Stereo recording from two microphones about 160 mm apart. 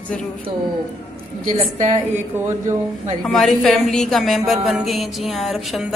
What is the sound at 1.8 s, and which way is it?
Speech, 50° right (ahead or behind).